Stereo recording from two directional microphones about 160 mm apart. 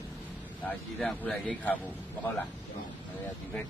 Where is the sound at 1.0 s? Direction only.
5° left (ahead or behind).